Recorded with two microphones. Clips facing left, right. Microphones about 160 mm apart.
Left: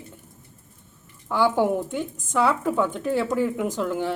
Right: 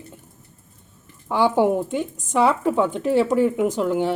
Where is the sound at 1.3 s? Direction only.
20° right (ahead or behind).